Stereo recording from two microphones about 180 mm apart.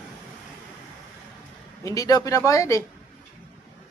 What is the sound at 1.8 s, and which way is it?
Speech, 20° left (ahead or behind).